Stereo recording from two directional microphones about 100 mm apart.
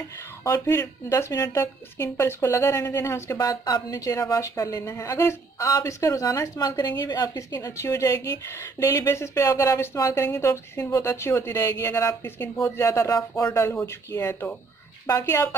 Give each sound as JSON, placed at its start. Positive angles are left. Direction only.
{"t": 0.4, "sound": "speech", "side_deg": 30}
{"t": 3.3, "sound": "speech", "side_deg": 40}
{"t": 7.6, "sound": "speech", "side_deg": 30}